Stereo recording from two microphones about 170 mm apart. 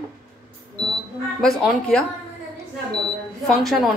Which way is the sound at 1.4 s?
Centre (ahead or behind).